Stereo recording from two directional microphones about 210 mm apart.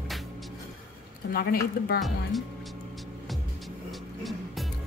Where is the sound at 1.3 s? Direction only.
50° left (ahead or behind).